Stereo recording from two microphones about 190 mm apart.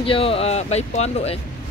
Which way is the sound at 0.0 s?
30° left (ahead or behind).